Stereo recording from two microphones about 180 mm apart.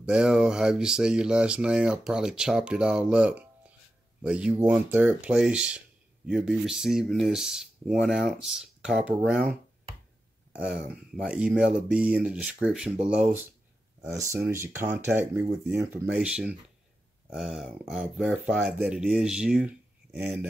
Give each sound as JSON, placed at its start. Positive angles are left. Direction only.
{"t": 0.0, "sound": "speech", "side_deg": -5}
{"t": 10.5, "sound": "speech", "side_deg": -5}